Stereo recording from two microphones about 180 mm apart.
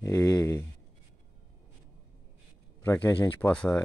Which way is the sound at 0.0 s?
15° left (ahead or behind).